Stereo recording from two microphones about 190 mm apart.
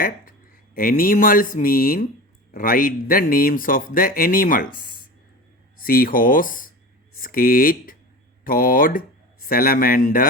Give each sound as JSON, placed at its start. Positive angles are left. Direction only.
{"t": 0.8, "sound": "speech", "side_deg": 50}
{"t": 5.8, "sound": "speech", "side_deg": 50}